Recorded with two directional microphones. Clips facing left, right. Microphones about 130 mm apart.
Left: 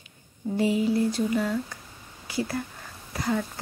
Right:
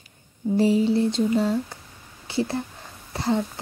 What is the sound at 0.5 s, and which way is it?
Speech, 30° right (ahead or behind).